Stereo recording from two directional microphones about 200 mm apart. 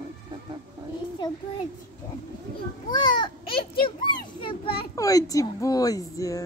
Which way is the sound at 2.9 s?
20° left (ahead or behind).